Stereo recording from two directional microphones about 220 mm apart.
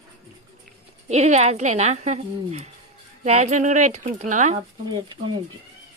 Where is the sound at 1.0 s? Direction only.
30° right (ahead or behind).